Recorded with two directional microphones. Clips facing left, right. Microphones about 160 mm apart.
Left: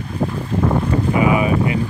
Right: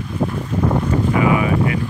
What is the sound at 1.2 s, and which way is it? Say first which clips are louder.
Wind noise: left 1 dB; 20° left (ahead or behind).